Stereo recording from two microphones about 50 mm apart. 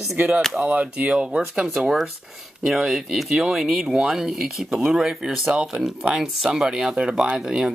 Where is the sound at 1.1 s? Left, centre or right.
Centre.